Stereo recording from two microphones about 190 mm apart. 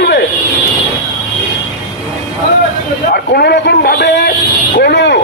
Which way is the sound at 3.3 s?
60° left (ahead or behind).